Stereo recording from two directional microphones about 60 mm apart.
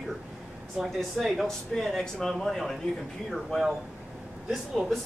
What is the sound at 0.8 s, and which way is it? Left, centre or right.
Speech, centre.